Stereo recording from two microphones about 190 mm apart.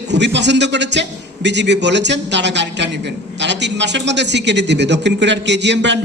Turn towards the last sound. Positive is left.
turn(degrees=-65)  # may be behind; listen again after turning